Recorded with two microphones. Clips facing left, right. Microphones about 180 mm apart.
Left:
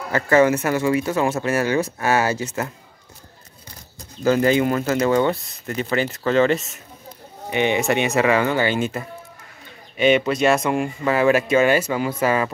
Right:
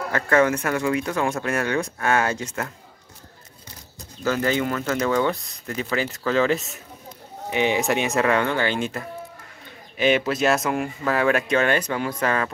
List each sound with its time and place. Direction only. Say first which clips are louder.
0.1 s speech: left 4 dB; 5° left (ahead or behind)
4.2 s speech: left 5 dB; 15° left (ahead or behind)
4.8 s speech: left 3 dB; 10° left (ahead or behind)